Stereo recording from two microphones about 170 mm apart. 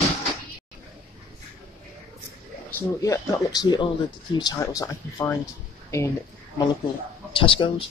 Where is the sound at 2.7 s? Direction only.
15° left (ahead or behind).